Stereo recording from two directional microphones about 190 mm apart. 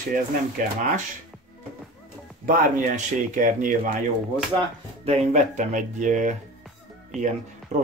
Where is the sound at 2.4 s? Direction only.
50° right (ahead or behind).